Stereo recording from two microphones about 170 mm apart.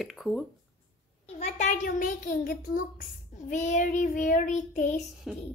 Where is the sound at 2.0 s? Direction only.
55° left (ahead or behind).